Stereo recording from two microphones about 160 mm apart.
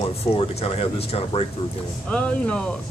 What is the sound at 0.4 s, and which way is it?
Speech, 40° left (ahead or behind).